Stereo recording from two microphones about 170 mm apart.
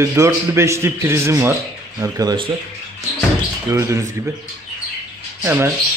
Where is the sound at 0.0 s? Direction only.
15° right (ahead or behind).